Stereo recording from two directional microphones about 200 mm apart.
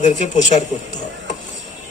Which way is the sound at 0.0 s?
35° left (ahead or behind).